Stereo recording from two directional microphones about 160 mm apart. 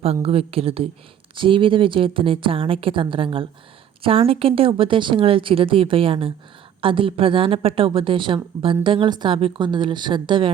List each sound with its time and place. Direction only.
0.0 s a woman's voice: 35° right (ahead or behind)